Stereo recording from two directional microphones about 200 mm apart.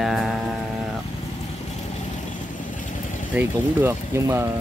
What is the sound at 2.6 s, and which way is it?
Vehicle, 40° left (ahead or behind).